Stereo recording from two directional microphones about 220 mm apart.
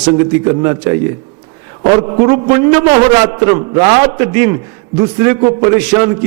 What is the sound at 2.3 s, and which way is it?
A man's voice, 15° right (ahead or behind).